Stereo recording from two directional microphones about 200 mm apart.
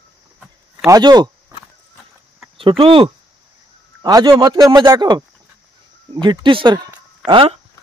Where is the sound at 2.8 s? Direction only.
25° right (ahead or behind).